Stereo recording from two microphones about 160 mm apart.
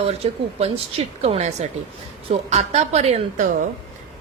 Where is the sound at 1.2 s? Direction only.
45° right (ahead or behind).